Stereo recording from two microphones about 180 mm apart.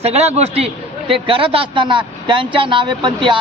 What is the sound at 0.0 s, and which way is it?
A man's voice, 35° right (ahead or behind).